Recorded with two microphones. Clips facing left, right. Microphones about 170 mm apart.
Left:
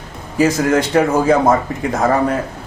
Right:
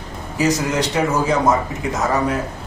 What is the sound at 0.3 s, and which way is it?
A man's voice, 55° left (ahead or behind).